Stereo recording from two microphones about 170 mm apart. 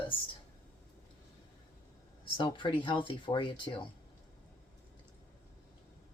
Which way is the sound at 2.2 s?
25° left (ahead or behind).